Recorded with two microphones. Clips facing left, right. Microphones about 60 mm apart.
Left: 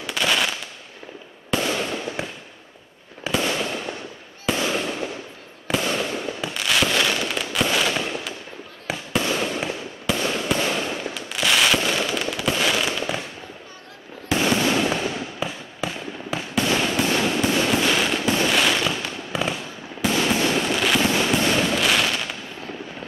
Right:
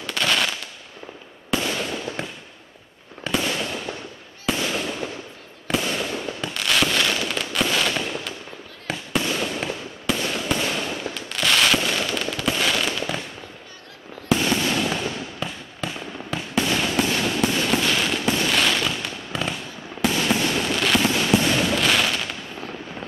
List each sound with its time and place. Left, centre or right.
0.0 s fireworks: centre
3.3 s fireworks: centre
14.4 s fireworks: centre